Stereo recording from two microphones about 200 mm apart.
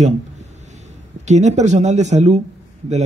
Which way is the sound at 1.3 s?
35° right (ahead or behind).